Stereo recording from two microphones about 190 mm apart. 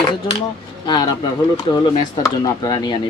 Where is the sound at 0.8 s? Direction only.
20° left (ahead or behind).